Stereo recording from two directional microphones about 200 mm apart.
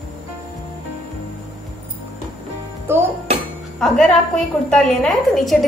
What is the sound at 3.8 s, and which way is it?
A woman's voice, centre (ahead or behind).